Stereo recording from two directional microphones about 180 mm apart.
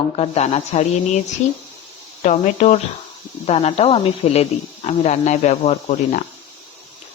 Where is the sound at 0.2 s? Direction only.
35° left (ahead or behind).